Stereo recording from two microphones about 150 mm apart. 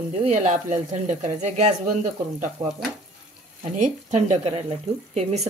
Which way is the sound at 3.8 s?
55° right (ahead or behind).